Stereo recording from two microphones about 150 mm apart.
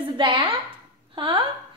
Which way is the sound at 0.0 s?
35° right (ahead or behind).